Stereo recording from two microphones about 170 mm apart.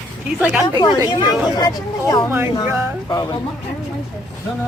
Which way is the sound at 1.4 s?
25° left (ahead or behind).